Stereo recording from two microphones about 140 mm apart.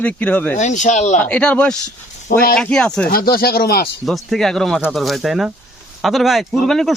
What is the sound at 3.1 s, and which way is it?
Speech, 90° left.